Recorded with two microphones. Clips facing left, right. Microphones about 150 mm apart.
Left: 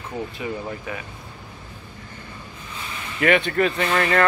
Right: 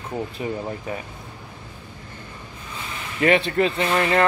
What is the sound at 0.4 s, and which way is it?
Speech, 40° right (ahead or behind).